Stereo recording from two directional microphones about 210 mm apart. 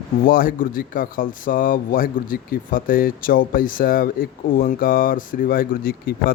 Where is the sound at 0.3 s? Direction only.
40° left (ahead or behind).